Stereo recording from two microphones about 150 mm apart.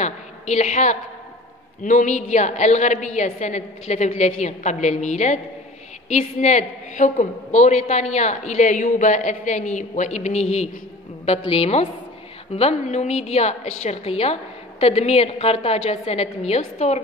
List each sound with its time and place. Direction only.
0.0 s a woman's voice: 50° left (ahead or behind)